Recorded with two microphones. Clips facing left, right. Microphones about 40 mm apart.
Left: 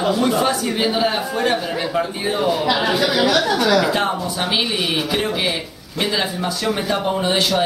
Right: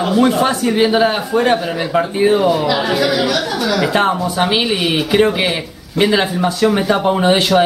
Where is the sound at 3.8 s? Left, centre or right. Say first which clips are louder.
Right 4 dB; right.